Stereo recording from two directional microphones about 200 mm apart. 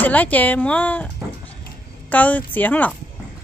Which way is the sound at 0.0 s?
10° left (ahead or behind).